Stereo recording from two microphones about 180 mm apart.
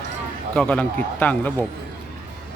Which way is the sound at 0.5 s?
5° left (ahead or behind).